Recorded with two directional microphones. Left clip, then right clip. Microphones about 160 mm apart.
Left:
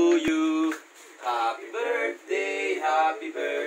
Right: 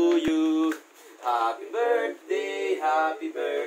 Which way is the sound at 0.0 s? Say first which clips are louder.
Even; 20° right (ahead or behind).